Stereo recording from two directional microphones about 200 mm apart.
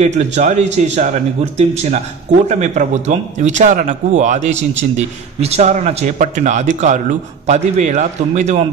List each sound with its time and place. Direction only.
0.0 s speech: 35° right (ahead or behind)
2.4 s speech: 35° right (ahead or behind)